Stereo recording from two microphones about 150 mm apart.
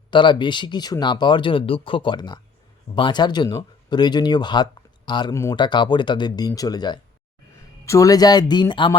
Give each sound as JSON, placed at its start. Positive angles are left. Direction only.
{"t": 0.1, "sound": "speech", "side_deg": 30}
{"t": 5.3, "sound": "speech", "side_deg": 20}
{"t": 5.5, "sound": "speech", "side_deg": 30}